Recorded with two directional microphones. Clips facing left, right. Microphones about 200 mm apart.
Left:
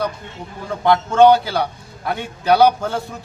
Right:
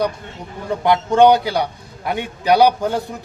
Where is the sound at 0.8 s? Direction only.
15° right (ahead or behind).